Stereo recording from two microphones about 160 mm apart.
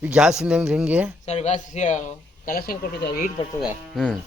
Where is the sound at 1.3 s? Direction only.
45° left (ahead or behind).